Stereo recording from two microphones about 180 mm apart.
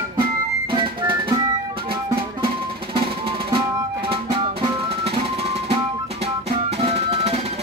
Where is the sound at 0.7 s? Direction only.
25° right (ahead or behind).